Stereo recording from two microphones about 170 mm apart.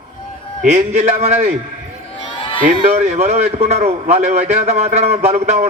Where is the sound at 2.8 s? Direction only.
45° right (ahead or behind).